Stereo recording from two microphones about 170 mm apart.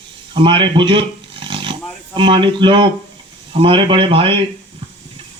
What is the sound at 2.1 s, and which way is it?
A man's voice, 30° right (ahead or behind).